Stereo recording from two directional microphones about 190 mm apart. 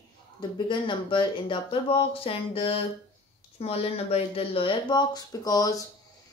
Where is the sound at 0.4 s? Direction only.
25° left (ahead or behind).